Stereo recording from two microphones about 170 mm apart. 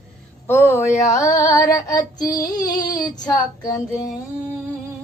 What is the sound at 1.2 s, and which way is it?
Child singing, 20° left (ahead or behind).